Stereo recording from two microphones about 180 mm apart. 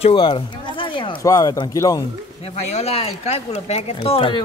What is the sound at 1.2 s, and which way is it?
Speech, 20° left (ahead or behind).